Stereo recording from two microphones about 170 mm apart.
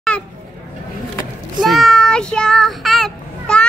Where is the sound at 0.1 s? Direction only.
5° left (ahead or behind).